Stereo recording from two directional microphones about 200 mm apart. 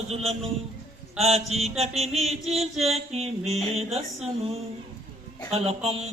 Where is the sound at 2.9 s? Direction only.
30° right (ahead or behind).